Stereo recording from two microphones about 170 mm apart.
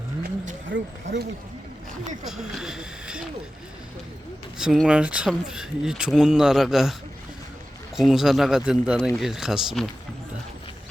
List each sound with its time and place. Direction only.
0.7 s speech: 90° right
2.2 s speech: 5° right (ahead or behind)
4.5 s speech: 5° right (ahead or behind)
7.9 s speech: centre (ahead or behind)